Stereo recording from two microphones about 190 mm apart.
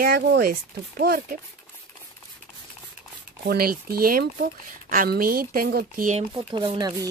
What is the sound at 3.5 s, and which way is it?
Speech, 55° right (ahead or behind).